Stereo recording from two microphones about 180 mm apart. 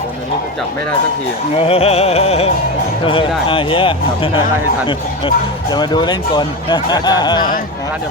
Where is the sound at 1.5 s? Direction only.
35° left (ahead or behind).